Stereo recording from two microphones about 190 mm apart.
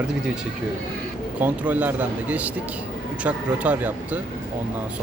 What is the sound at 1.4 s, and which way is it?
Speech, 10° right (ahead or behind).